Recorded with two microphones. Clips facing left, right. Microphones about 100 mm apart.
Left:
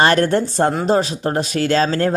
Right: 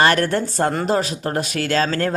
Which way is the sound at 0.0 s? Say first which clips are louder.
Left 2 dB; 25° left (ahead or behind).